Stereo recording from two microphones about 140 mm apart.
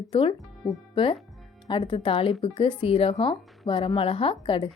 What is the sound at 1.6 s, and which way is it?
A woman's voice, 35° left (ahead or behind).